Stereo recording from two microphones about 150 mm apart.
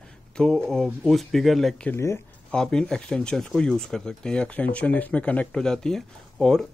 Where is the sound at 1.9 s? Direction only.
20° left (ahead or behind).